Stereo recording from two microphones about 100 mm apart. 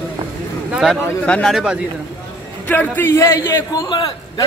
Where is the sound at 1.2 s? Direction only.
10° left (ahead or behind).